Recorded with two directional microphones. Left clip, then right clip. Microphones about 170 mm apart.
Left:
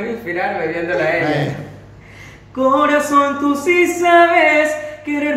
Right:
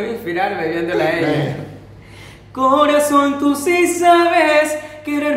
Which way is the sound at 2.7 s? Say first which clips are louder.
Right 1 dB; 25° right (ahead or behind).